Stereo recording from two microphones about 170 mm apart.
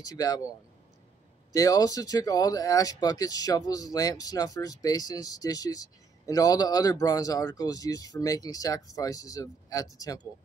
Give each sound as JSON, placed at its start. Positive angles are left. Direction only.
{"t": 0.0, "sound": "speech", "side_deg": 20}
{"t": 1.5, "sound": "speech", "side_deg": 20}